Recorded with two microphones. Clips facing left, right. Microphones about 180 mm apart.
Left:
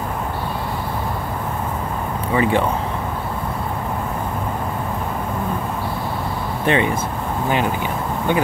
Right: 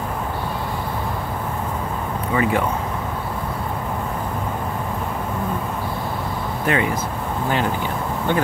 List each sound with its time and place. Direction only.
2.3 s speech: 25° left (ahead or behind)
6.6 s speech: 25° left (ahead or behind)